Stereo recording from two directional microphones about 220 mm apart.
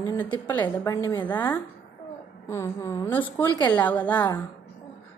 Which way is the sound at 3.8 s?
5° left (ahead or behind).